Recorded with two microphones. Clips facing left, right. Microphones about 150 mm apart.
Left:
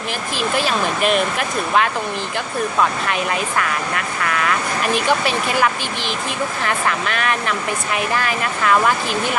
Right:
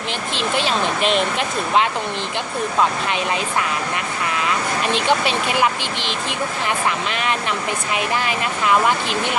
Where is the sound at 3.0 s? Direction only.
20° right (ahead or behind).